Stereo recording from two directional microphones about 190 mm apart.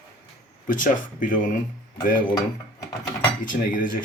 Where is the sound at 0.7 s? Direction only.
45° left (ahead or behind).